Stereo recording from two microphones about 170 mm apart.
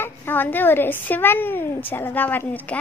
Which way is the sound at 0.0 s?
10° left (ahead or behind).